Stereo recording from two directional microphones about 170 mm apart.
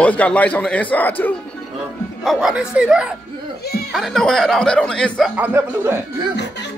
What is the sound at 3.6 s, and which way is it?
Baby cry, 65° left (ahead or behind).